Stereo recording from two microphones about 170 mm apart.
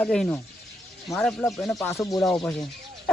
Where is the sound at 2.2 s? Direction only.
5° left (ahead or behind).